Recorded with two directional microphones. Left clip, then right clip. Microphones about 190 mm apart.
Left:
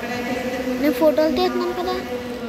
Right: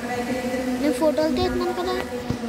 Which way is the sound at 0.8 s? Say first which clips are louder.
Left 4 dB; centre (ahead or behind).